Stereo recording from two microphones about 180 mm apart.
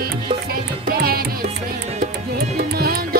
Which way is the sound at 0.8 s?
55° right (ahead or behind).